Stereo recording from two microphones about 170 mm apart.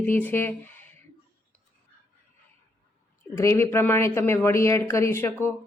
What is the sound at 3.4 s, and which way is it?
Speech, 15° left (ahead or behind).